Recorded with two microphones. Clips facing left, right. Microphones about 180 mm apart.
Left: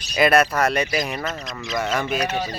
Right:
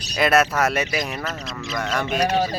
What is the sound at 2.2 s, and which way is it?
Speech, 45° right (ahead or behind).